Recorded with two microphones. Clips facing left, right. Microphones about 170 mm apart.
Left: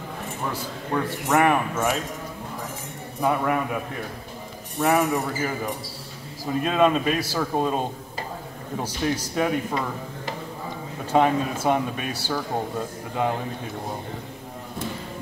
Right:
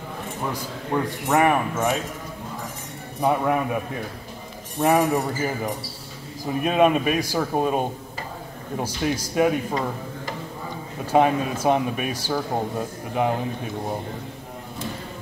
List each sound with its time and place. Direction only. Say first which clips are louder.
0.5 s a man's voice: right 1 dB; 10° right (ahead or behind)
3.2 s a man's voice: right 2 dB; 20° right (ahead or behind)
4.7 s a man's voice: right 2 dB; 20° right (ahead or behind)
6.6 s a man's voice: right 2 dB; 15° right (ahead or behind)
11.1 s a man's voice: right 1 dB; 15° right (ahead or behind)